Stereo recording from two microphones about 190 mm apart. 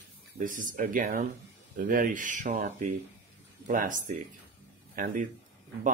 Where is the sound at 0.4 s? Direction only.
45° right (ahead or behind).